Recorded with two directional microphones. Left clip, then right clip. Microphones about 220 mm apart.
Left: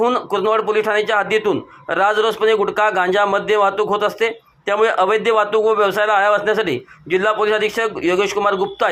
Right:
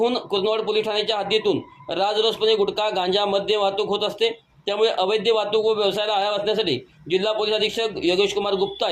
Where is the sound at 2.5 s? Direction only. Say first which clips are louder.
Left 5 dB; 40° left (ahead or behind).